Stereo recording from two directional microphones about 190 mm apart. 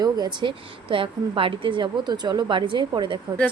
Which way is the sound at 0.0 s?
20° right (ahead or behind).